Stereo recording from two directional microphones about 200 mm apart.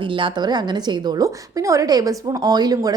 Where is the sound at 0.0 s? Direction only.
25° right (ahead or behind).